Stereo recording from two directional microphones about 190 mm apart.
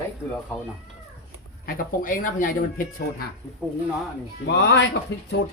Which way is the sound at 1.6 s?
50° left (ahead or behind).